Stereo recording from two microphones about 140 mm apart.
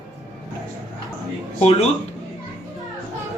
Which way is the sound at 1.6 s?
50° left (ahead or behind).